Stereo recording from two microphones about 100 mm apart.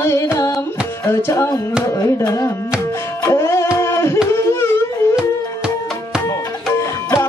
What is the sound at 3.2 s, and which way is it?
Music, 25° left (ahead or behind).